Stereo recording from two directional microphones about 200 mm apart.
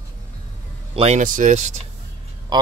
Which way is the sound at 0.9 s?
35° right (ahead or behind).